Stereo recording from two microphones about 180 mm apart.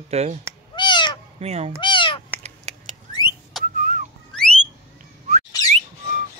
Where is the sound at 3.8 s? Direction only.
50° right (ahead or behind).